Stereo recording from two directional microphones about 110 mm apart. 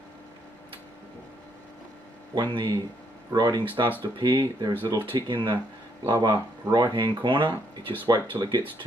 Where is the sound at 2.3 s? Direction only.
40° right (ahead or behind).